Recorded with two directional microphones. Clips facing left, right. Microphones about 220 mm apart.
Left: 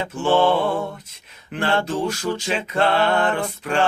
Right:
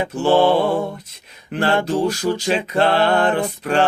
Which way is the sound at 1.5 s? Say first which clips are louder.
Right 4 dB; 35° right (ahead or behind).